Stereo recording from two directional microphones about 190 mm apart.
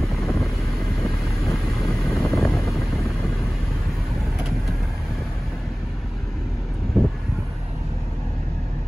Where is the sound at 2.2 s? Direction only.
Centre (ahead or behind).